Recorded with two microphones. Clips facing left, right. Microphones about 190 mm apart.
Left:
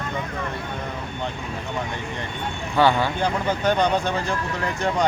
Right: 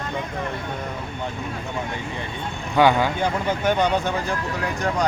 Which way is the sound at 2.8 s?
15° right (ahead or behind).